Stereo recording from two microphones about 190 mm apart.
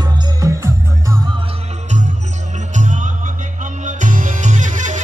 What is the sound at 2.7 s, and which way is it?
Music, 40° right (ahead or behind).